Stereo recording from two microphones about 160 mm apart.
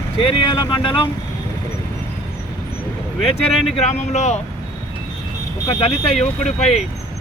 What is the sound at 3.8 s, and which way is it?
Speech, 45° left (ahead or behind).